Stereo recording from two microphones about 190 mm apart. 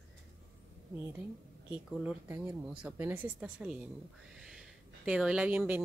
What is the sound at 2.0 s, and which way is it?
Speech, 10° right (ahead or behind).